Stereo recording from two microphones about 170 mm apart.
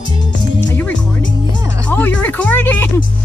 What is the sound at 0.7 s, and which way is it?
Music, 10° left (ahead or behind).